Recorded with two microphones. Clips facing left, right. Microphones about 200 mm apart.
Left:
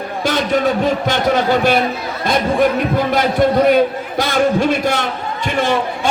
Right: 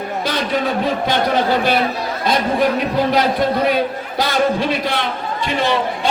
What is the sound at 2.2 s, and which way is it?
Speech, 50° left (ahead or behind).